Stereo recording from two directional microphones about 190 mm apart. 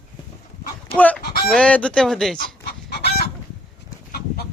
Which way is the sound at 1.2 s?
55° left (ahead or behind).